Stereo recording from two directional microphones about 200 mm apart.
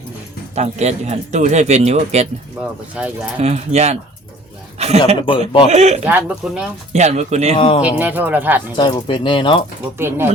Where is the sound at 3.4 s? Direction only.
35° right (ahead or behind).